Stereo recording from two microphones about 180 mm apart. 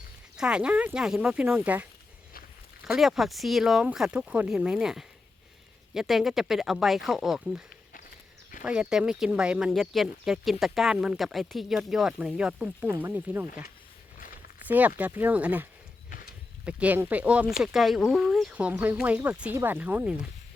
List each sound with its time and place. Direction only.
0.3 s speech: 5° right (ahead or behind)
8.6 s speech: 5° right (ahead or behind)
14.7 s speech: 10° right (ahead or behind)
16.0 s horse: 50° left (ahead or behind)
16.6 s speech: 10° right (ahead or behind)